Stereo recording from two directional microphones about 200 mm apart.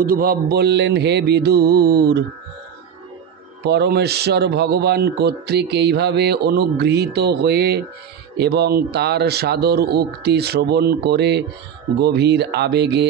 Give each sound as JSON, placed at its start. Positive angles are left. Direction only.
{"t": 0.0, "sound": "speech", "side_deg": -50}
{"t": 3.6, "sound": "speech", "side_deg": -55}